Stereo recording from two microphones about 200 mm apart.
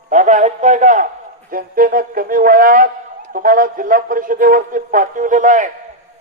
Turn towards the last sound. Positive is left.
turn(degrees=-40)  # may be behind; listen again after turning